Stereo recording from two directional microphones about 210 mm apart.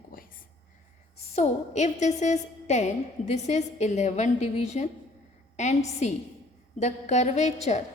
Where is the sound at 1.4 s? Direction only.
35° left (ahead or behind).